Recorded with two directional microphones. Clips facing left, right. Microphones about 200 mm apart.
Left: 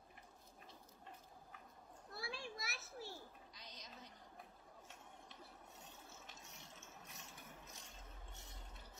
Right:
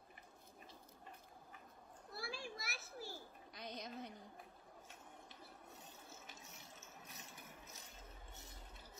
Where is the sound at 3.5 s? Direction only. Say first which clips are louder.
Right 9 dB; 55° right (ahead or behind).